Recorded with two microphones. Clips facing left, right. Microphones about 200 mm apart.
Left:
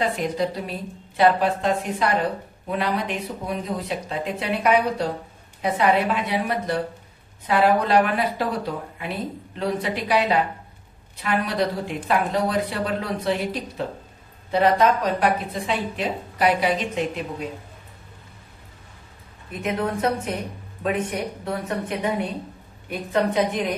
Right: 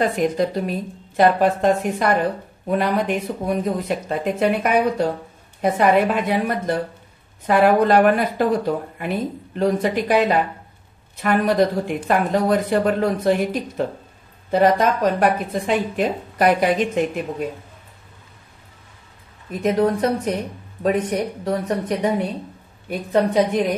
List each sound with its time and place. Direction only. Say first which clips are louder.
0.0 s speech: right 4 dB; 45° right (ahead or behind)
19.5 s a woman's voice: right 7 dB; 35° right (ahead or behind)
21.5 s a woman's voice: right 6 dB; 35° right (ahead or behind)